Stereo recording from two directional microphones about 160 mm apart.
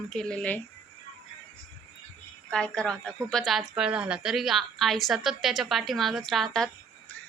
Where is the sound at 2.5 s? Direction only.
5° left (ahead or behind).